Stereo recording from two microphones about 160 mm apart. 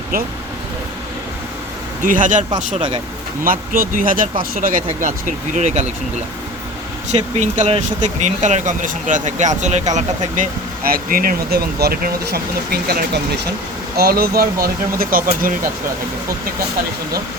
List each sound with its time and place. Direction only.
2.0 s speech: 55° right (ahead or behind)
3.4 s speech: 60° right (ahead or behind)
7.1 s speech: 45° right (ahead or behind)
10.8 s speech: 65° right (ahead or behind)